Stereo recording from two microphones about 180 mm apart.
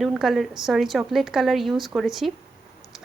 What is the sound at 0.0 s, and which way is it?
A woman's voice, centre (ahead or behind).